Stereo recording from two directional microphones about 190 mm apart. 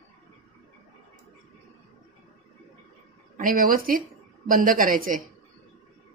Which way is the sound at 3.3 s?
45° right (ahead or behind).